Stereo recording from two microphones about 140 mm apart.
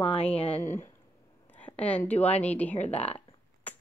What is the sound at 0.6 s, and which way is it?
Speech, 15° left (ahead or behind).